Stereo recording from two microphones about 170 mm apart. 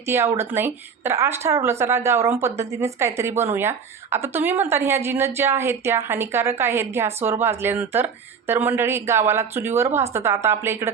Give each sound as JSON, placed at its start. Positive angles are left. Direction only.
{"t": 0.0, "sound": "speech", "side_deg": -15}